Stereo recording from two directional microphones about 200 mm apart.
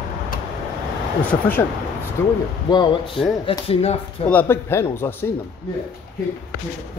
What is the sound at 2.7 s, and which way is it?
A man's voice, 20° left (ahead or behind).